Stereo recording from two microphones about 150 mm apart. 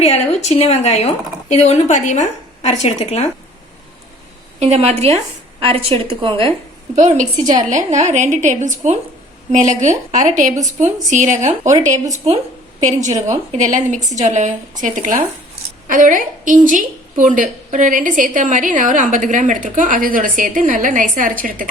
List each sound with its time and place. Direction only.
0.0 s speech: 45° left (ahead or behind)
4.6 s a woman's voice: 45° right (ahead or behind)
6.9 s a woman's voice: 55° right (ahead or behind)